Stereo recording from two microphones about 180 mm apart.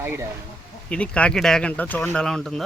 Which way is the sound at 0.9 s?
5° left (ahead or behind).